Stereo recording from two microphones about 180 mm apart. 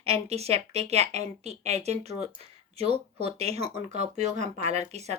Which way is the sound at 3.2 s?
35° right (ahead or behind).